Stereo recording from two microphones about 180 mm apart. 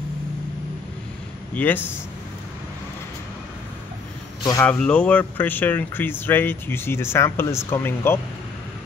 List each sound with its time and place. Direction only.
1.5 s speech: 10° left (ahead or behind)
4.4 s speech: 20° left (ahead or behind)
4.6 s speech: 5° left (ahead or behind)